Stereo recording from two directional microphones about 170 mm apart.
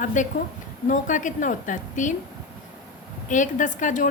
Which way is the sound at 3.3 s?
50° left (ahead or behind).